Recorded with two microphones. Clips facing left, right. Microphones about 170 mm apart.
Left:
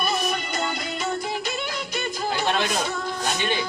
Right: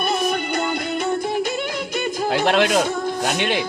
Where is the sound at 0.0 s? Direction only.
55° right (ahead or behind); by 2.7 s 75° right (ahead or behind).